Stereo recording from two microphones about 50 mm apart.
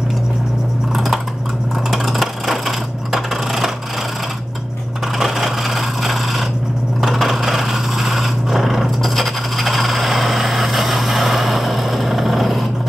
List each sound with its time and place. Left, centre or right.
0.9 s typing: centre
1.9 s coin: centre
5.2 s a sound: centre